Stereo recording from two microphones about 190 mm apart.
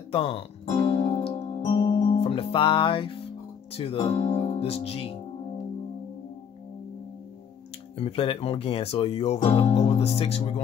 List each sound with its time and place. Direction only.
0.1 s music: 30° left (ahead or behind)
3.7 s speech: 30° left (ahead or behind)
8.0 s speech: 30° left (ahead or behind)